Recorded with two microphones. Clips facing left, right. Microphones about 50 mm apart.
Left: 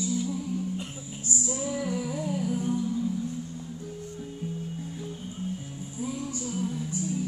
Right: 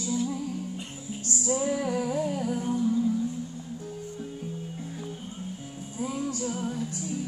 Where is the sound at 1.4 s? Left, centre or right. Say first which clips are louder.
Right 5 dB; right.